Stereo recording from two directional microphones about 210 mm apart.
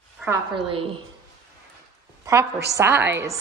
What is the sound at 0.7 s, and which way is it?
Speech, 25° right (ahead or behind).